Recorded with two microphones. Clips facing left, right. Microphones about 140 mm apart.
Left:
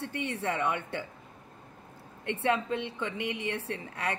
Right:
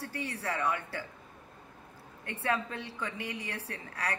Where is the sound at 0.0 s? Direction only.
25° left (ahead or behind).